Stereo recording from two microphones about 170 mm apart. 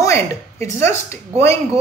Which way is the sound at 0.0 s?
15° left (ahead or behind).